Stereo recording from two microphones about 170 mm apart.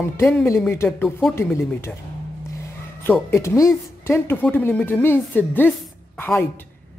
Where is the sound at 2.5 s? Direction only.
15° left (ahead or behind).